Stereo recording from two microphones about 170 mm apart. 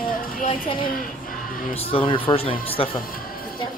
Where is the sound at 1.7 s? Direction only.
35° left (ahead or behind).